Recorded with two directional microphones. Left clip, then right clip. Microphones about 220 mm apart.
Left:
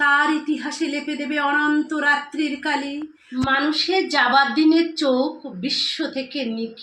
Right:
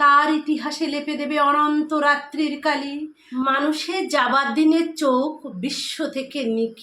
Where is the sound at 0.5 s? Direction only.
20° right (ahead or behind).